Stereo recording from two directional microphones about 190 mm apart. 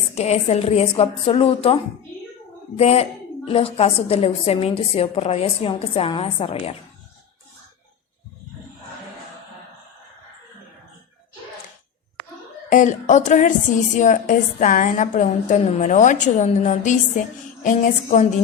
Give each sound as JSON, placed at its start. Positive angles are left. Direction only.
{"t": 0.1, "sound": "a woman's voice", "side_deg": 35}
{"t": 12.7, "sound": "a woman's voice", "side_deg": 40}